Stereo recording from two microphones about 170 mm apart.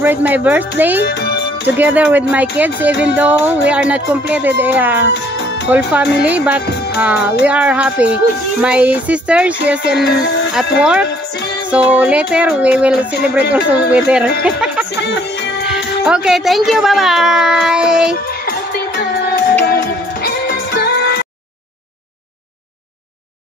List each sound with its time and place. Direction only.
0.0 s speech: 10° right (ahead or behind)
1.0 s music: 75° left (ahead or behind)
1.8 s speech: 10° right (ahead or behind)
10.0 s speech: 80° left
10.8 s a child's voice: 5° right (ahead or behind)
16.1 s a child's voice: centre (ahead or behind)
18.5 s music: 65° left (ahead or behind)